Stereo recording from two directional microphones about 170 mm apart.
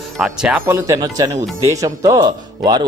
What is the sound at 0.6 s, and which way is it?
Speech, 15° right (ahead or behind).